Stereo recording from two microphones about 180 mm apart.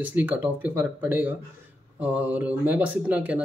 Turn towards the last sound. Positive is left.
turn(degrees=-10)  # may be behind; listen again after turning